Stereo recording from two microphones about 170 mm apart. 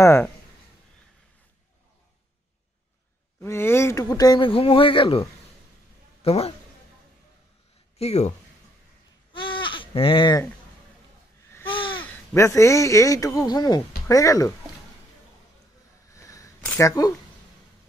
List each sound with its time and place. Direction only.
0.0 s speech: 15° left (ahead or behind)
3.4 s speech: 15° left (ahead or behind); by 5.2 s 30° left (ahead or behind)
6.2 s speech: 35° left (ahead or behind)
8.0 s speech: 40° left (ahead or behind)
9.3 s baby cry: 30° left (ahead or behind)
11.7 s a sound: 30° left (ahead or behind)
12.0 s speech: 15° left (ahead or behind)
16.1 s a sound: 20° left (ahead or behind)
16.7 s speech: 20° left (ahead or behind)